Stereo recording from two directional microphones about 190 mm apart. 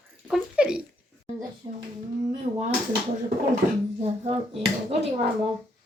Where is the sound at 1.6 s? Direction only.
20° right (ahead or behind).